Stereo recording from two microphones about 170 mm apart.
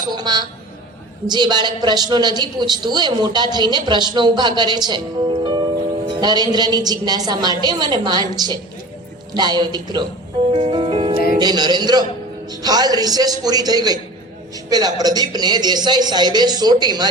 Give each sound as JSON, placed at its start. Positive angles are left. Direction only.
{"t": 0.1, "sound": "a woman's voice", "side_deg": -25}
{"t": 9.3, "sound": "a woman's voice", "side_deg": -25}
{"t": 10.5, "sound": "music", "side_deg": -30}
{"t": 11.3, "sound": "a woman's voice", "side_deg": -25}